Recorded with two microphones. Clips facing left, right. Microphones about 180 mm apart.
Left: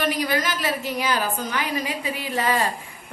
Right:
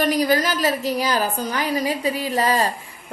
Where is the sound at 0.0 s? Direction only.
40° right (ahead or behind).